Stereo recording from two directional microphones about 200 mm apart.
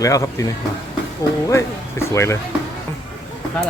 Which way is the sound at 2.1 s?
15° left (ahead or behind).